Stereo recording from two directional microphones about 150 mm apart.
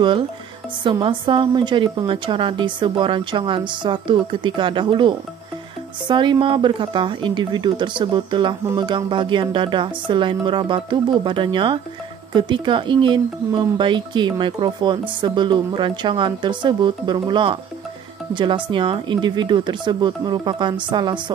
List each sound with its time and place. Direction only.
0.8 s speech: 35° right (ahead or behind)